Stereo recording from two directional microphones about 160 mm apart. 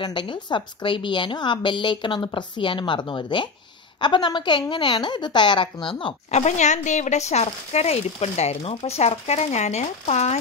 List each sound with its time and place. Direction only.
0.0 s a woman's voice: 30° left (ahead or behind)
6.4 s speech: 45° left (ahead or behind)